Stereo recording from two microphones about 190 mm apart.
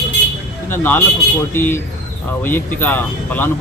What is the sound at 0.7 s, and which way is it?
Speech, 10° left (ahead or behind).